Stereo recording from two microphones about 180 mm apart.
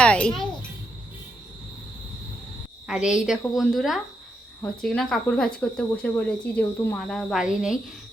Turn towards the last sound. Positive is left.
turn(degrees=-5)  # may be behind; listen again after turning